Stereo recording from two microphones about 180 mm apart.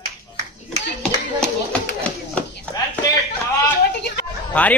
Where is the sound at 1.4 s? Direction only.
5° left (ahead or behind).